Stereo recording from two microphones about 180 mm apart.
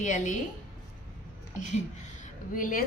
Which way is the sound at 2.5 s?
50° left (ahead or behind).